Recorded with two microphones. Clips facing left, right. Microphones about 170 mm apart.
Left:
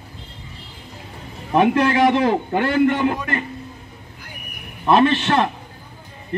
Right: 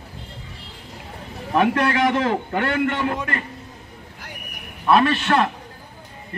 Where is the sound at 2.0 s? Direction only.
20° left (ahead or behind).